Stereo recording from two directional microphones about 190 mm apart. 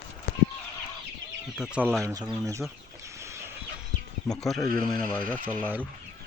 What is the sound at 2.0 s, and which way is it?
Speech, 15° right (ahead or behind).